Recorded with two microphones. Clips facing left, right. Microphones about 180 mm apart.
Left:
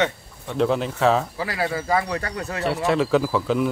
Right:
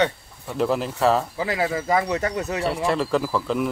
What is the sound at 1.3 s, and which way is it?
Speech, 20° right (ahead or behind).